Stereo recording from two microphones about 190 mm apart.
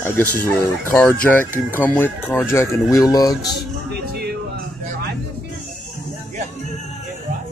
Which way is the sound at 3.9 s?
55° right (ahead or behind).